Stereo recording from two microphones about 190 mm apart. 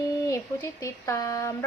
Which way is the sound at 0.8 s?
15° left (ahead or behind).